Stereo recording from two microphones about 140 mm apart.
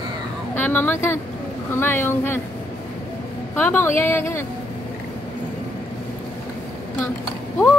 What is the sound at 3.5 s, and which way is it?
Speech, 15° left (ahead or behind).